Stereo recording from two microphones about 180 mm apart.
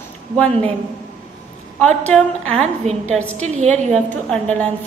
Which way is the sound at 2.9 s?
40° right (ahead or behind).